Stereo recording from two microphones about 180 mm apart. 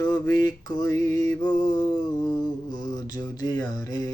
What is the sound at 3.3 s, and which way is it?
Speech, 20° left (ahead or behind).